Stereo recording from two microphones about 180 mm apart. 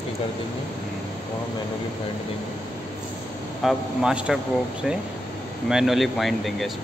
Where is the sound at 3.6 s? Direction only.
Centre (ahead or behind).